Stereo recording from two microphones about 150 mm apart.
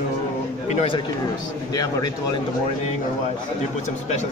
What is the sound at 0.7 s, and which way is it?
Speech, 40° left (ahead or behind).